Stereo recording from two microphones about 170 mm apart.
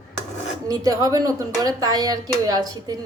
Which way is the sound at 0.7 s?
20° right (ahead or behind).